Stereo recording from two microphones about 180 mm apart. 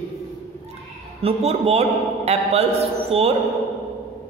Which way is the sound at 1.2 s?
35° right (ahead or behind).